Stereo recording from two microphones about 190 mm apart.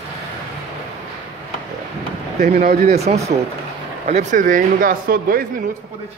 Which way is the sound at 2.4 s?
55° right (ahead or behind).